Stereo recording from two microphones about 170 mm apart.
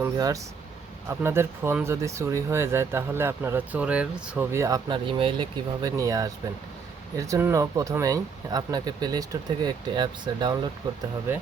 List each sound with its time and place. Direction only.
0.0 s speech: 20° right (ahead or behind)